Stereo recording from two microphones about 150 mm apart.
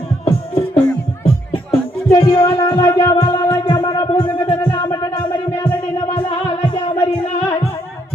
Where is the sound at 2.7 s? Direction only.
25° left (ahead or behind).